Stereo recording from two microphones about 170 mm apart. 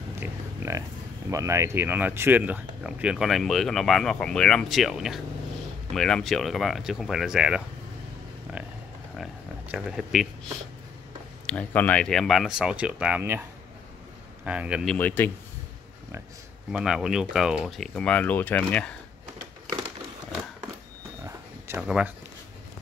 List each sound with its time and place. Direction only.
0.2 s a sound: 15° right (ahead or behind)
1.3 s speech: 15° right (ahead or behind)
9.1 s a sound: centre (ahead or behind)
11.4 s speech: 10° left (ahead or behind); by 13.4 s 10° right (ahead or behind)
14.4 s speech: 5° right (ahead or behind)
14.9 s speech: 10° left (ahead or behind)
16.7 s speech: 5° right (ahead or behind)
21.3 s a sound: 15° right (ahead or behind)
21.8 s speech: 5° right (ahead or behind)